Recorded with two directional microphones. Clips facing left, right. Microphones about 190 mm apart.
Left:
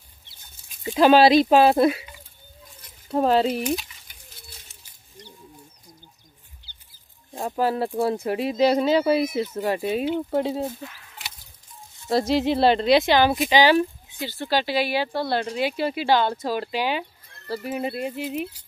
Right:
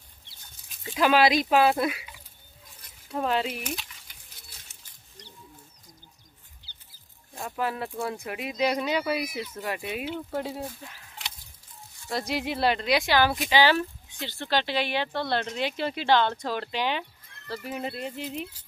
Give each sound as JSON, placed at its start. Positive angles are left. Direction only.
{"t": 0.9, "sound": "speech", "side_deg": 30}
{"t": 3.1, "sound": "speech", "side_deg": 35}
{"t": 7.3, "sound": "speech", "side_deg": 35}
{"t": 12.1, "sound": "speech", "side_deg": 30}